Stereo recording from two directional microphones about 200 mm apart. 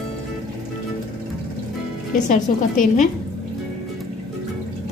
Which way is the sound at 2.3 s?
40° left (ahead or behind).